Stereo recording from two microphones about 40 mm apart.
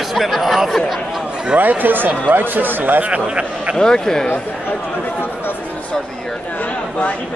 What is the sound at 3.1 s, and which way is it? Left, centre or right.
Speech, right.